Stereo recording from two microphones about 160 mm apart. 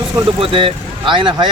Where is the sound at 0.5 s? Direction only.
30° right (ahead or behind).